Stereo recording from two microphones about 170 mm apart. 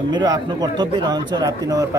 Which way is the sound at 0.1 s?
25° right (ahead or behind).